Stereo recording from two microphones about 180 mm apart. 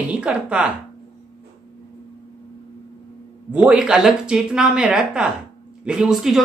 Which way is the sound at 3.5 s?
5° right (ahead or behind).